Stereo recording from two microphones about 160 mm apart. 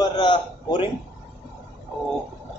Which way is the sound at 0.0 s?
30° left (ahead or behind).